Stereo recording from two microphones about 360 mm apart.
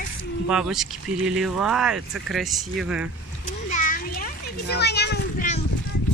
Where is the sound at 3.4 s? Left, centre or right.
Left.